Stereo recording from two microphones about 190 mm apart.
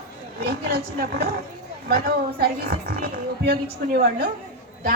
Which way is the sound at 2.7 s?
55° right (ahead or behind).